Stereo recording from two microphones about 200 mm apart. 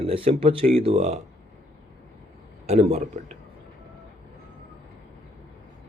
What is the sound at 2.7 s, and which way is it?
Speech, 30° right (ahead or behind).